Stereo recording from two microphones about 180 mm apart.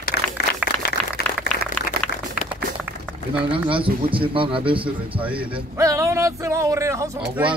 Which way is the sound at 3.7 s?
30° right (ahead or behind).